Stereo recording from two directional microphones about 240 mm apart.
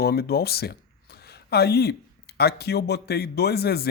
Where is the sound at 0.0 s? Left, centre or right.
Left.